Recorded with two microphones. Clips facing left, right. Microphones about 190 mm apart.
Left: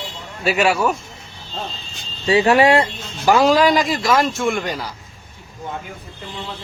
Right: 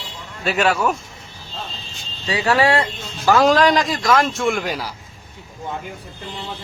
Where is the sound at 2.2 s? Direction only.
25° left (ahead or behind).